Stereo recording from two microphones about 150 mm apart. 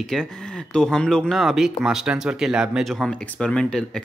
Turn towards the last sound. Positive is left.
turn(degrees=5)  # may be behind; listen again after turning